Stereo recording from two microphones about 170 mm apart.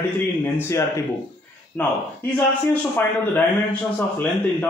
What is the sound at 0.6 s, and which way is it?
Speech, 15° left (ahead or behind).